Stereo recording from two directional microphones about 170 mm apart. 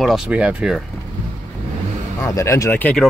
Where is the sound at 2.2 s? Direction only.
20° left (ahead or behind).